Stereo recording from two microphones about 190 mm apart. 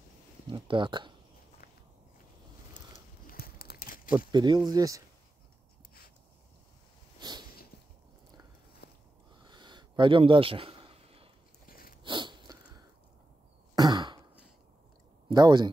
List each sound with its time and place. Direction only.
0.5 s speech: 25° right (ahead or behind)
3.3 s crumpling: 55° left (ahead or behind)
4.3 s speech: 20° right (ahead or behind)
7.2 s a sound: 20° right (ahead or behind)
8.8 s a sound: 60° left (ahead or behind)
9.4 s a sound: 25° right (ahead or behind)
11.6 s dog: 50° left (ahead or behind)
12.0 s sneeze: 25° right (ahead or behind)
13.7 s throat clearing: 20° right (ahead or behind)
15.2 s speech: 20° right (ahead or behind)